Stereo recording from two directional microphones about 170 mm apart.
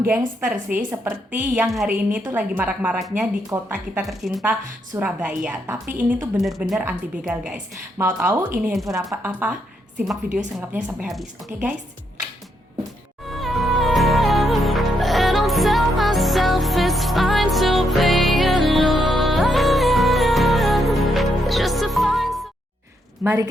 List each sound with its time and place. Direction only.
0.4 s a woman's voice: 5° right (ahead or behind)
4.0 s a woman's voice: centre (ahead or behind)
6.4 s a woman's voice: centre (ahead or behind)
10.6 s a woman's voice: 10° right (ahead or behind)
13.3 s music: centre (ahead or behind)
23.2 s a woman's voice: 15° right (ahead or behind)